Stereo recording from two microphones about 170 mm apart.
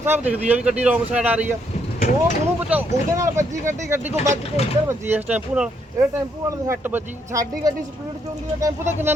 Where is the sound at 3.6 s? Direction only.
45° right (ahead or behind).